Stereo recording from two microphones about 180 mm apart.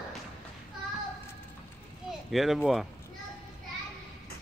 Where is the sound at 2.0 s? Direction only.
Centre (ahead or behind).